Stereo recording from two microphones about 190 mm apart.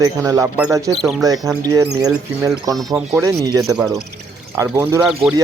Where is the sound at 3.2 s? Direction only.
20° right (ahead or behind).